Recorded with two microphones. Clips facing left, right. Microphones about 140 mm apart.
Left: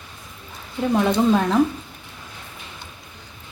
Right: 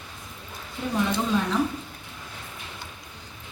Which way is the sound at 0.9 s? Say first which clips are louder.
Left 7 dB; 60° left (ahead or behind).